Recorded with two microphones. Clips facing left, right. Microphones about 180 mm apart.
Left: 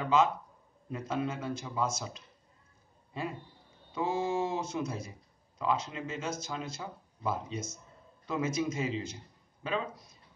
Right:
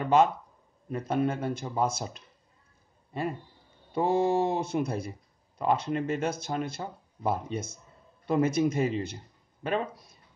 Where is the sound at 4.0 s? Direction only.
60° right (ahead or behind).